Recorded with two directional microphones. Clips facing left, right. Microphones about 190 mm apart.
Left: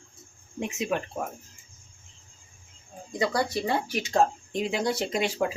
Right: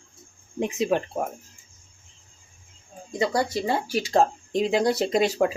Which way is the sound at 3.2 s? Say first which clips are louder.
Right 2 dB; 25° right (ahead or behind).